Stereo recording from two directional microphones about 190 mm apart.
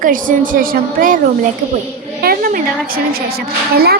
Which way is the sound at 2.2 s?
50° right (ahead or behind).